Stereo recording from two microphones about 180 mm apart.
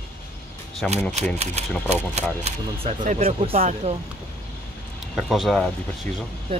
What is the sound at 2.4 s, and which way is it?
Speech, 40° right (ahead or behind).